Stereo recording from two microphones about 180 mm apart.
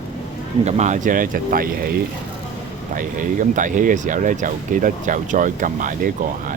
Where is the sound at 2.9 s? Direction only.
45° right (ahead or behind).